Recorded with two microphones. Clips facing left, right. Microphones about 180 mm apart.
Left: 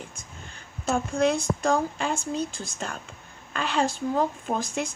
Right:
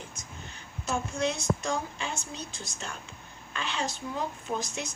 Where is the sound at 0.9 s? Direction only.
50° left (ahead or behind).